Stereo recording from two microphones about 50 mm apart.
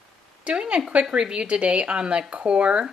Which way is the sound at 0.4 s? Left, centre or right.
Right.